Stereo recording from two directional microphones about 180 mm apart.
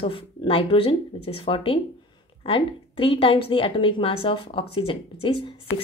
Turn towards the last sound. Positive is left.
turn(degrees=30)  # may be behind; listen again after turning